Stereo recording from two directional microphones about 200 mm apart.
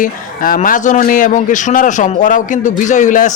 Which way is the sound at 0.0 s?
45° left (ahead or behind).